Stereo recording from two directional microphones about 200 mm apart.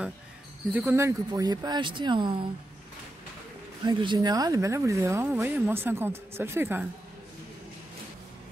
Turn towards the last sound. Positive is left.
turn(degrees=-10)  # may be behind; listen again after turning